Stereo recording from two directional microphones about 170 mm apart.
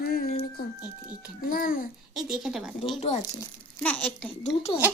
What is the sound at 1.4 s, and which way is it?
Speech, 55° left (ahead or behind).